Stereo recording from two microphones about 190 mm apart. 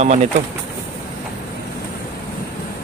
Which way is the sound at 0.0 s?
35° right (ahead or behind).